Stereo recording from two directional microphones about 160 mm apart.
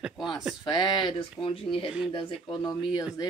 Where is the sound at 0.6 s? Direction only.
25° left (ahead or behind).